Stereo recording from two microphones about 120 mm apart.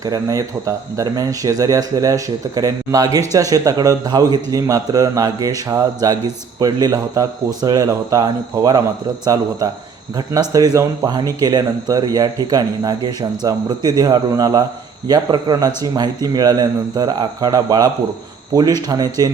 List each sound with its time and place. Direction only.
0.0 s speech: 30° right (ahead or behind)